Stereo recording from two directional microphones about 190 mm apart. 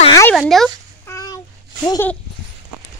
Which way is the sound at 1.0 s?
15° left (ahead or behind).